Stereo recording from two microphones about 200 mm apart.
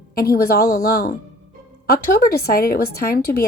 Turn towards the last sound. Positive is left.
turn(degrees=50)  # may be behind; listen again after turning